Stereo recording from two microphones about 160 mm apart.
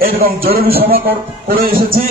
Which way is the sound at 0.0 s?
65° right (ahead or behind).